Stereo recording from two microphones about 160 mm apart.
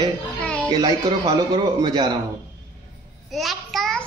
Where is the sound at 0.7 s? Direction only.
25° right (ahead or behind).